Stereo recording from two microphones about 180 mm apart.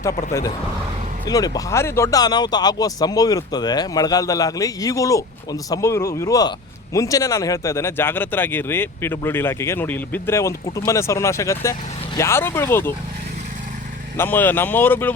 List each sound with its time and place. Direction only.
1.3 s speech: 20° left (ahead or behind)
14.2 s speech: 10° left (ahead or behind)